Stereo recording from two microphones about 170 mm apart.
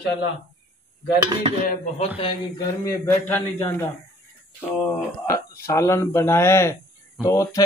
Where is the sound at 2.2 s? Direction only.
20° left (ahead or behind).